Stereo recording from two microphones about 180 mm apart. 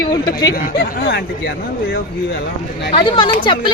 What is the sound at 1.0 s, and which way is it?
Speech, 70° left (ahead or behind).